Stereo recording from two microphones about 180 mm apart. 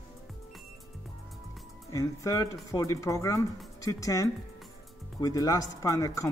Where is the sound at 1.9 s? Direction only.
20° left (ahead or behind).